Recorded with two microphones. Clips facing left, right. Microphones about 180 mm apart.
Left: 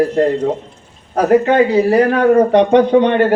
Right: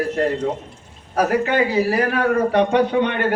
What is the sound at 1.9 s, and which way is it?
A man's voice, 25° left (ahead or behind).